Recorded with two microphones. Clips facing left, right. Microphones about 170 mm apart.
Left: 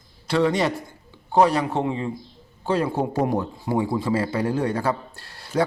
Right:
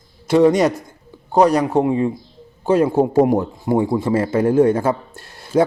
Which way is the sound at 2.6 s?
20° right (ahead or behind).